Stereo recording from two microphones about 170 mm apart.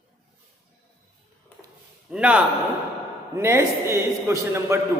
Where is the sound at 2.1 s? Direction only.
5° right (ahead or behind).